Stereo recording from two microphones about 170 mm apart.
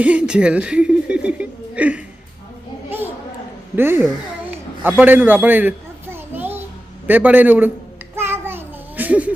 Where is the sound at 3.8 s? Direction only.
15° right (ahead or behind).